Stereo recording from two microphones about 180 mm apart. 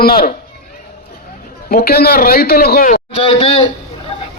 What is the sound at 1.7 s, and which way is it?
A man's voice, 60° left (ahead or behind).